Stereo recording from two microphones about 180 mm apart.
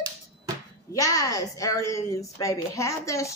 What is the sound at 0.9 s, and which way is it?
A woman's voice, 20° left (ahead or behind).